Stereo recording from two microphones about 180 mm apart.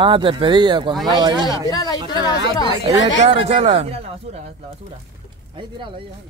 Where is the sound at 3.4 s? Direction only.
35° right (ahead or behind).